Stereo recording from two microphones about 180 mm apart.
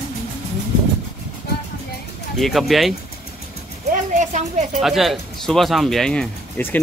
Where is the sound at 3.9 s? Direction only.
45° right (ahead or behind).